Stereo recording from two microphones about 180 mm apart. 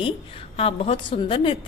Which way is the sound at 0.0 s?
30° left (ahead or behind).